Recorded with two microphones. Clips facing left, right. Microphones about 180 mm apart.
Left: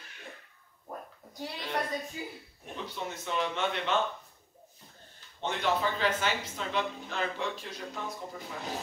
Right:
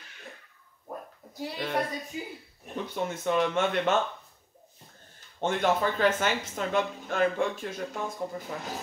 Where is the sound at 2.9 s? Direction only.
50° right (ahead or behind).